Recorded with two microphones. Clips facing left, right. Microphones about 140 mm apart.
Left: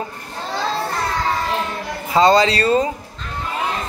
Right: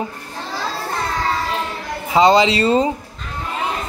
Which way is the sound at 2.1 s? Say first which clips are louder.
Right 1 dB; 20° right (ahead or behind).